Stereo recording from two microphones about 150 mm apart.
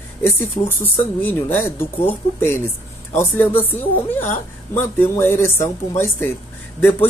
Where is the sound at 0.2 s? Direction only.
15° left (ahead or behind).